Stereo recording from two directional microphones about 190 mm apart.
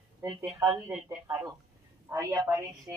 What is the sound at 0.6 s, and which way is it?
Speech, 10° right (ahead or behind).